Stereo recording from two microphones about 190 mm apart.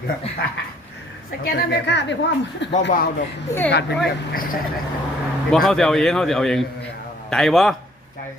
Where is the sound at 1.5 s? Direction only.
65° left (ahead or behind).